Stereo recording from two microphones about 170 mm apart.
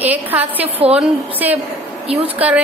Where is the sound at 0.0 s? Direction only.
10° right (ahead or behind).